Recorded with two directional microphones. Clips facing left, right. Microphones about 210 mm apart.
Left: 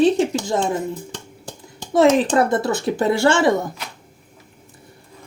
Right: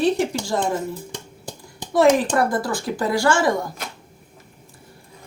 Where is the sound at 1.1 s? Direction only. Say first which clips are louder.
Even; 10° right (ahead or behind).